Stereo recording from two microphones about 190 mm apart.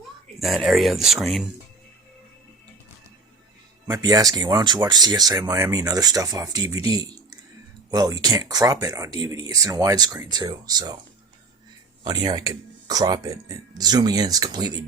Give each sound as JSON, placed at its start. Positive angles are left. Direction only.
{"t": 0.3, "sound": "speech", "side_deg": 0}
{"t": 3.8, "sound": "speech", "side_deg": -20}
{"t": 12.0, "sound": "speech", "side_deg": -20}